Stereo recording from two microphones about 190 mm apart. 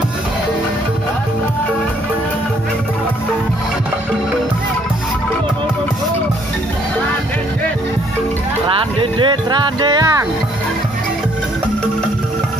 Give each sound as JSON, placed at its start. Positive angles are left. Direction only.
{"t": 8.6, "sound": "music", "side_deg": -25}